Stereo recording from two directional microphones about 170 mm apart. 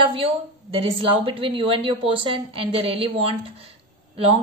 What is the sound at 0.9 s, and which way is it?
A woman's voice, 30° right (ahead or behind).